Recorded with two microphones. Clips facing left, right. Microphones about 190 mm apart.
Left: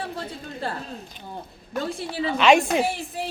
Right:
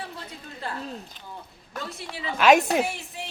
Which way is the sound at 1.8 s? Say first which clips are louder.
Left 8 dB; 30° left (ahead or behind).